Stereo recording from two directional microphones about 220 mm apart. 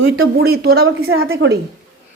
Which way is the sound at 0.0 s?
45° right (ahead or behind).